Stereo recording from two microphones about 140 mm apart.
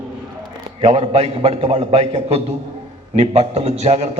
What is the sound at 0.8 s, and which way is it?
A man's voice, 50° right (ahead or behind).